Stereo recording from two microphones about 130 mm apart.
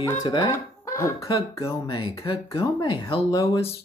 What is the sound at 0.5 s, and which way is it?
Speech, 25° left (ahead or behind).